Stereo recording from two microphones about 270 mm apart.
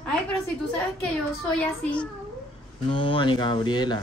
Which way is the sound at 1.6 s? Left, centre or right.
Centre.